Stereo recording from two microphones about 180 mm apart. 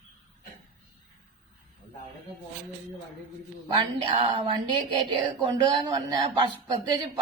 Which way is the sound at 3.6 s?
25° right (ahead or behind).